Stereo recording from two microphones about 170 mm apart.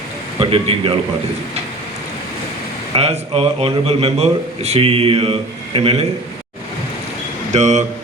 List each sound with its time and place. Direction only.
0.3 s a man's voice: 35° right (ahead or behind)
2.9 s a man's voice: 35° right (ahead or behind)
7.5 s speech: 40° right (ahead or behind)